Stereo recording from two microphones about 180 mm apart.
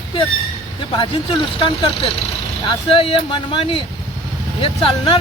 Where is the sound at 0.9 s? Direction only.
30° left (ahead or behind).